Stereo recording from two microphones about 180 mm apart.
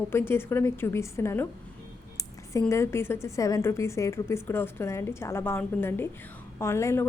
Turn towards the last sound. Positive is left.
turn(degrees=15)  # may be behind; listen again after turning